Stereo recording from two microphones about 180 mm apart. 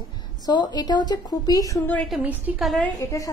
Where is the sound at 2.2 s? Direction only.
10° right (ahead or behind).